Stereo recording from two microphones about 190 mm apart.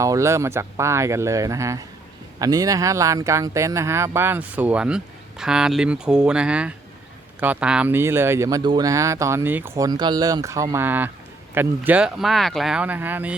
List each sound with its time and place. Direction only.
0.0 s speech: 15° right (ahead or behind)